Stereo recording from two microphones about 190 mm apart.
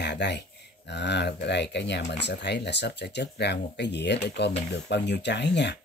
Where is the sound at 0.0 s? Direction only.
65° left (ahead or behind).